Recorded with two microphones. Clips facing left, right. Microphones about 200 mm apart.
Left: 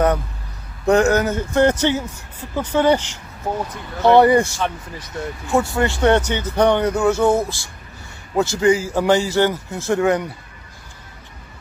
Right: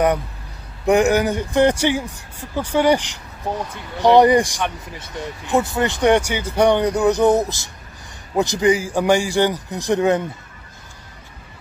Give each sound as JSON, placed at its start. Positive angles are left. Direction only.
{"t": 0.8, "sound": "speech", "side_deg": -15}